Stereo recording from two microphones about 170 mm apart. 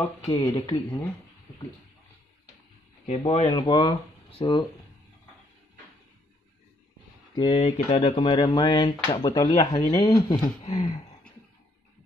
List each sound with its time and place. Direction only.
0.3 s speech: 25° left (ahead or behind)
3.1 s speech: 40° left (ahead or behind)
3.4 s speech: 25° left (ahead or behind)
7.3 s speech: 30° left (ahead or behind)